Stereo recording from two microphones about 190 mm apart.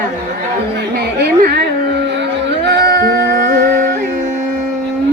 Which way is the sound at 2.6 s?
60° right (ahead or behind).